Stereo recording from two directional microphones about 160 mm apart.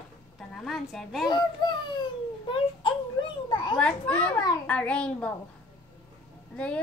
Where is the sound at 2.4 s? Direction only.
30° left (ahead or behind).